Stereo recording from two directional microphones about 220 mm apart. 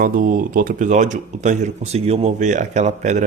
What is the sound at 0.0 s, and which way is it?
Speech, 40° right (ahead or behind).